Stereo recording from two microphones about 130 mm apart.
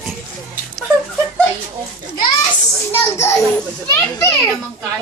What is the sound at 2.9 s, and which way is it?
Speech, 20° left (ahead or behind).